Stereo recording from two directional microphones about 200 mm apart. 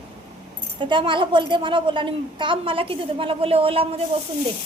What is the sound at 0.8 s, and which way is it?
A woman's voice, 25° right (ahead or behind).